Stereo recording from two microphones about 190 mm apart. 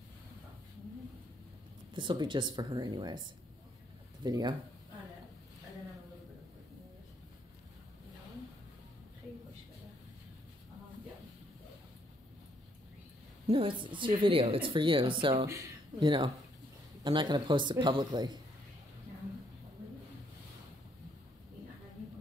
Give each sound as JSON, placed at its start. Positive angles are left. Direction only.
{"t": 2.0, "sound": "a woman's voice", "side_deg": -25}
{"t": 4.2, "sound": "a woman's voice", "side_deg": -20}
{"t": 13.5, "sound": "a woman's voice", "side_deg": -30}